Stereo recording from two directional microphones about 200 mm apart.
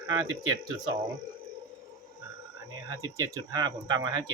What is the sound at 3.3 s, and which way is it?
Speech, 20° right (ahead or behind).